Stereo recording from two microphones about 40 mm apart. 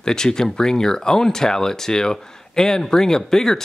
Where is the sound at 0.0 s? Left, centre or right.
Centre.